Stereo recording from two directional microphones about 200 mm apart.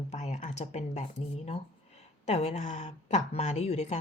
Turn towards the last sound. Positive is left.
turn(degrees=35)  # may be behind; listen again after turning